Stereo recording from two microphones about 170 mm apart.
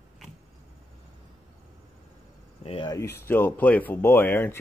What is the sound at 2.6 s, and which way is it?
Cricket, 35° left (ahead or behind).